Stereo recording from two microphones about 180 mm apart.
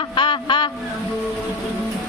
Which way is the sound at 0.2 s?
25° left (ahead or behind).